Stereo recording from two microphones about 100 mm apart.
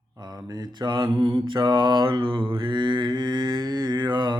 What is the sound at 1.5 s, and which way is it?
Mantra, 50° right (ahead or behind).